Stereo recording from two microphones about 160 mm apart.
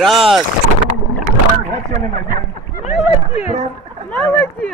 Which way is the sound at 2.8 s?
45° left (ahead or behind).